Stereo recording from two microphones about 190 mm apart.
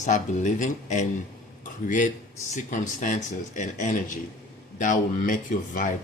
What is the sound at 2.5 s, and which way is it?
Speech, 40° left (ahead or behind).